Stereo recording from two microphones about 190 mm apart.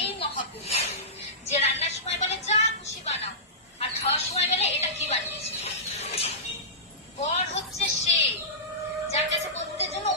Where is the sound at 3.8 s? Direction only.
35° left (ahead or behind).